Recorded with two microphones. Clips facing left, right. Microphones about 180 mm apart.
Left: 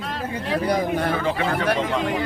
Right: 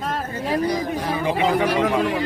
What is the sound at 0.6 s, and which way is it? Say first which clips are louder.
Speech: left 2 dB; 60° left (ahead or behind).